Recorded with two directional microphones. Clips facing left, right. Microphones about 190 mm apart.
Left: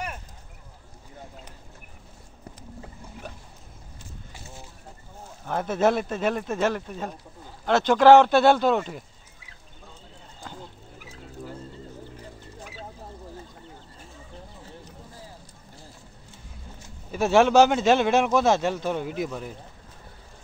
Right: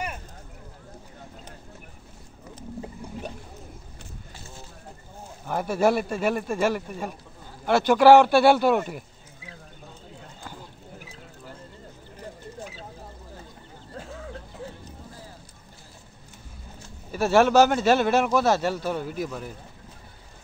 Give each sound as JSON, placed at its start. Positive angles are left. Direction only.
{"t": 2.8, "sound": "boat", "side_deg": -20}
{"t": 5.4, "sound": "speech", "side_deg": -10}
{"t": 17.1, "sound": "speech", "side_deg": -5}